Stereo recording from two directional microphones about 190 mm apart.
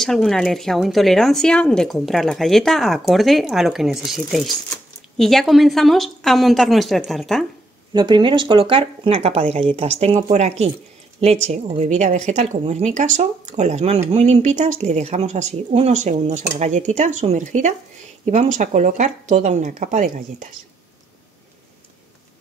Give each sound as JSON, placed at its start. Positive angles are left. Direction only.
{"t": 0.0, "sound": "speech", "side_deg": 0}
{"t": 7.9, "sound": "speech", "side_deg": -25}